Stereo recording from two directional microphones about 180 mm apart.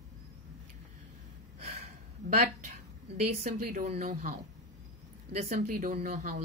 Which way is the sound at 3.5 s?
55° right (ahead or behind).